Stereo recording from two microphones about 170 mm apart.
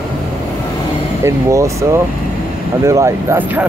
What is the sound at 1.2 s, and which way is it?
Speech, 15° right (ahead or behind).